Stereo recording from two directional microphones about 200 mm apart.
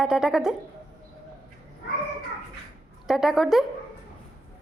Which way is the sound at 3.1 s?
Centre (ahead or behind).